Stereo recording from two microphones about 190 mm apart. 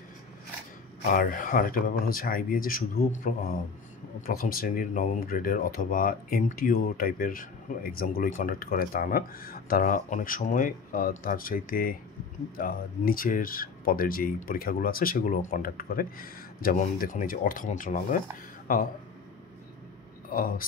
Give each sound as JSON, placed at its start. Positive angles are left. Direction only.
{"t": 1.1, "sound": "speech", "side_deg": 45}
{"t": 20.2, "sound": "a man's voice", "side_deg": 50}